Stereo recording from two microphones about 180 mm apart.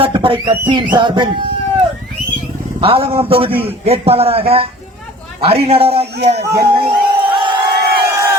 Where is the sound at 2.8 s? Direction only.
30° right (ahead or behind).